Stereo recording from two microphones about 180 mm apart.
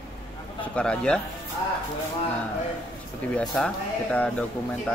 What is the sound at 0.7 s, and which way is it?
Speech, 5° left (ahead or behind).